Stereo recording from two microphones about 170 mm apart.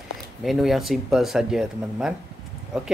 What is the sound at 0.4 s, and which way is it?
Speech, centre (ahead or behind).